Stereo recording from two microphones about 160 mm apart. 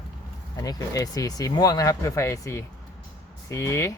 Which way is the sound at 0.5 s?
25° left (ahead or behind).